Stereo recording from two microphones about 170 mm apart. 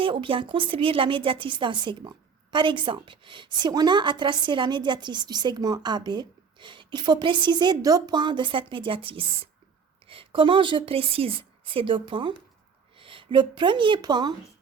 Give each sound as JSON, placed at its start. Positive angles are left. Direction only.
{"t": 0.0, "sound": "a woman's voice", "side_deg": -30}